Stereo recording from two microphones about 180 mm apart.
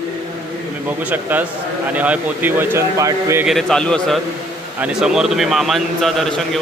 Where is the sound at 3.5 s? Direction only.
Centre (ahead or behind).